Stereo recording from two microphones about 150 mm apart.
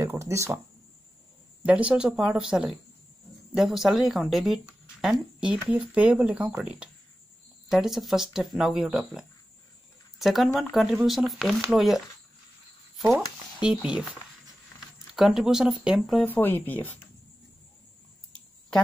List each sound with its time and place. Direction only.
0.0 s a sound: 20° right (ahead or behind)
1.6 s speech: 10° right (ahead or behind)
12.9 s a sound: centre (ahead or behind)
13.6 s speech: 5° right (ahead or behind)
15.1 s speech: centre (ahead or behind)
16.3 s speech: 10° left (ahead or behind)